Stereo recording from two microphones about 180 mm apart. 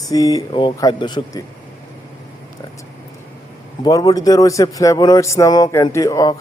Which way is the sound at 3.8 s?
20° left (ahead or behind).